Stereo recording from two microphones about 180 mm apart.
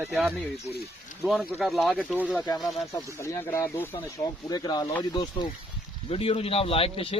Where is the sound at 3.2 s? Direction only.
15° left (ahead or behind).